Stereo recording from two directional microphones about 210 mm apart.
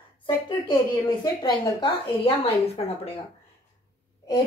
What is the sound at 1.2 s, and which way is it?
A woman's voice, 20° left (ahead or behind).